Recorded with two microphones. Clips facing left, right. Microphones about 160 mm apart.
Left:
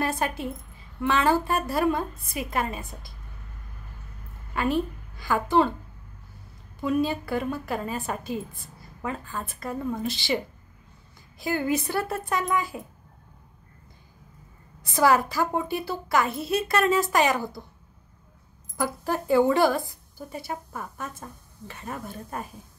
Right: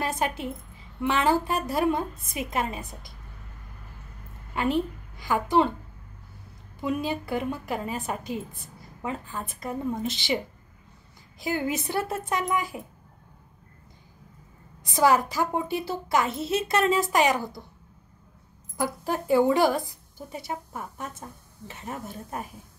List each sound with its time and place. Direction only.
0.0 s a woman's voice: 20° right (ahead or behind)
4.6 s a woman's voice: 20° right (ahead or behind)
6.8 s a woman's voice: 20° right (ahead or behind)
14.8 s a woman's voice: 15° right (ahead or behind)
17.4 s speech: 20° left (ahead or behind)
18.8 s a woman's voice: 15° right (ahead or behind)